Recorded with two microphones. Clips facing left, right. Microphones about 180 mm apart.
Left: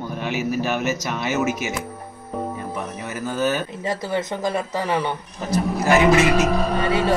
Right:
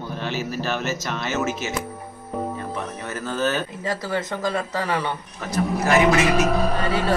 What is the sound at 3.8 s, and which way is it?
Music, 20° left (ahead or behind).